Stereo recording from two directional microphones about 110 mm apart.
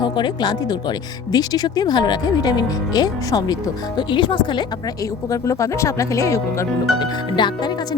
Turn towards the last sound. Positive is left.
turn(degrees=40)  # may be behind; listen again after turning